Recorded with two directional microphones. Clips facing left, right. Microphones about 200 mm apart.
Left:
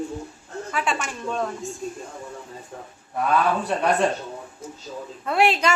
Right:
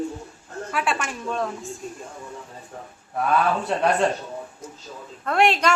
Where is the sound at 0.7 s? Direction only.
5° right (ahead or behind).